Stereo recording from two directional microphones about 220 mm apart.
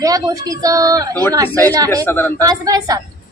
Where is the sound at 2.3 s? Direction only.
15° right (ahead or behind).